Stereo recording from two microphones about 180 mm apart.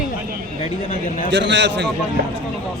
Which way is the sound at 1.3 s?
75° right (ahead or behind).